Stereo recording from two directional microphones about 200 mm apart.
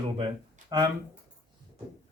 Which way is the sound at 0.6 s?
40° right (ahead or behind).